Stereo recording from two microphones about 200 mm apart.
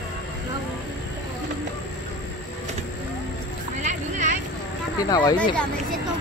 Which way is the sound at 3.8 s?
35° right (ahead or behind).